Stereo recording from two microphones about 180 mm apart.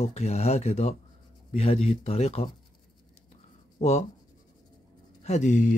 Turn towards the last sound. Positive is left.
turn(degrees=40)  # may be behind; listen again after turning